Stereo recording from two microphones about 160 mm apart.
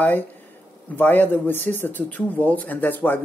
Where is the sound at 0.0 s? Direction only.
10° left (ahead or behind).